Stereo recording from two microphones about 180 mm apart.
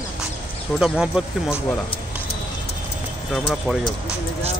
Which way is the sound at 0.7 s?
5° right (ahead or behind).